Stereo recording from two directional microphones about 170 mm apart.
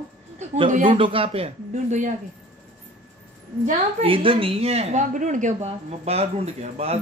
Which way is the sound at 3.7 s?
35° right (ahead or behind).